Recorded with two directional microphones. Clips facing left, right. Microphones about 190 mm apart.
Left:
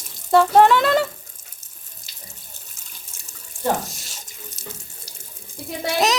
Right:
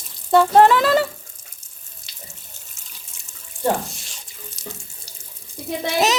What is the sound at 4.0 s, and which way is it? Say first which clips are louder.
Sink: left 1 dB; 45° left (ahead or behind).